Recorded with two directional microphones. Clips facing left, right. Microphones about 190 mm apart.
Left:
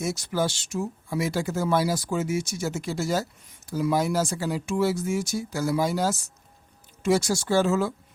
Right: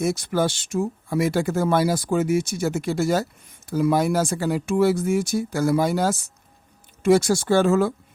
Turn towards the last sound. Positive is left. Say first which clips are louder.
# right 4 dB
turn(degrees=-55)  # may be behind; listen again after turning